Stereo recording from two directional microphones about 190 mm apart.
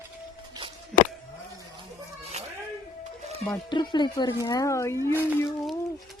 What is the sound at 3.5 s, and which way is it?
Speech, 25° left (ahead or behind).